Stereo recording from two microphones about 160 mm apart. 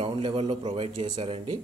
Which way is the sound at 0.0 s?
35° right (ahead or behind).